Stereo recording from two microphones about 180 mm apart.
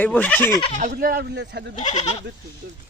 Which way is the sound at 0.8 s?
50° right (ahead or behind).